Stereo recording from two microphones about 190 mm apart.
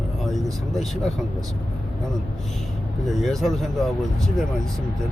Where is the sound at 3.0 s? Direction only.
Centre (ahead or behind).